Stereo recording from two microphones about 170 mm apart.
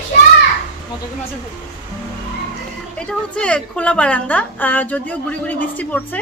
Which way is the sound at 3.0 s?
5° left (ahead or behind).